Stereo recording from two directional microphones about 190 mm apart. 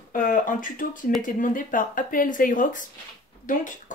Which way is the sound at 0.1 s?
45° left (ahead or behind).